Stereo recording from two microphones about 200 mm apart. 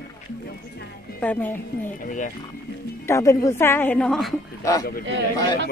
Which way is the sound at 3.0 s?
15° left (ahead or behind).